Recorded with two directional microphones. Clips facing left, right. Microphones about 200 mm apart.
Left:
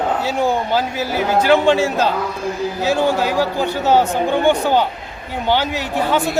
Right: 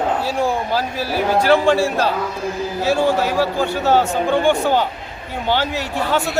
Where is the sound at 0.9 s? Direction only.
20° left (ahead or behind).